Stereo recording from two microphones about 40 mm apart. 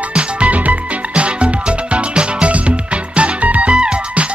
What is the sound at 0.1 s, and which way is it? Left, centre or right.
Music, right.